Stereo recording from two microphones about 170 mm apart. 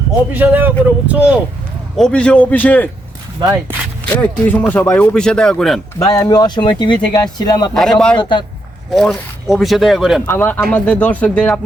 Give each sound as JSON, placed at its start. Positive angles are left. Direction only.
{"t": 0.3, "sound": "speech", "side_deg": -10}
{"t": 2.0, "sound": "speech", "side_deg": 5}
{"t": 4.2, "sound": "speech", "side_deg": 10}
{"t": 6.0, "sound": "speech", "side_deg": 20}
{"t": 7.7, "sound": "speech", "side_deg": 5}
{"t": 8.2, "sound": "speech", "side_deg": 25}
{"t": 8.9, "sound": "speech", "side_deg": 0}
{"t": 10.2, "sound": "speech", "side_deg": 10}